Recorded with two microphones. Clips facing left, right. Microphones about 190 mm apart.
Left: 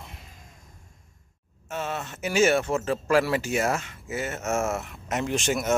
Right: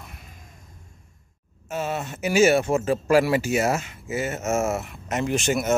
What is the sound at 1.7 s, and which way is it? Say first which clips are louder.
Speech: right 4 dB; 10° right (ahead or behind).